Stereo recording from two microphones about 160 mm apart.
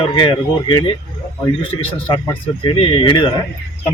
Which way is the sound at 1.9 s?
30° left (ahead or behind).